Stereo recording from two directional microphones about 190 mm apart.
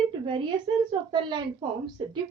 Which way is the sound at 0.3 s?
25° right (ahead or behind).